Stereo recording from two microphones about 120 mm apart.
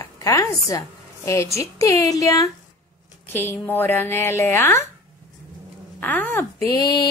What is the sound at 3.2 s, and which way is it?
A woman's voice, 20° left (ahead or behind).